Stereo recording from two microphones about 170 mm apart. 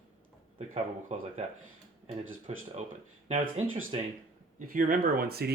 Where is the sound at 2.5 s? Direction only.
35° right (ahead or behind).